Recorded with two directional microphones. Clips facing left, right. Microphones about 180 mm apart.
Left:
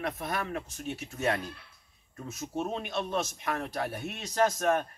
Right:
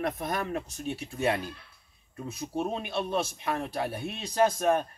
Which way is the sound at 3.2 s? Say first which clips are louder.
Right 2 dB; 25° right (ahead or behind).